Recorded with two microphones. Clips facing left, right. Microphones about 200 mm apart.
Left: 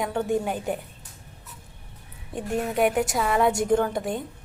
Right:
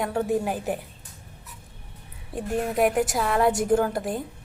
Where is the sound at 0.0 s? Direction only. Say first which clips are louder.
Right 1 dB; centre (ahead or behind).